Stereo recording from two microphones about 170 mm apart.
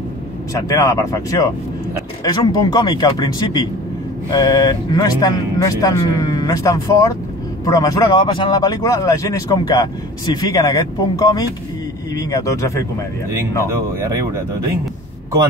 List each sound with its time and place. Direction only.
0.6 s speech: 20° left (ahead or behind)
13.7 s speech: 15° right (ahead or behind)